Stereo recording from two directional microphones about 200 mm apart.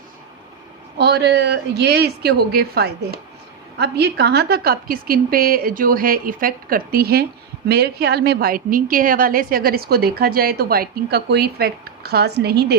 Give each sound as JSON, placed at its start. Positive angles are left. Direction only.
{"t": 0.9, "sound": "a woman's voice", "side_deg": -55}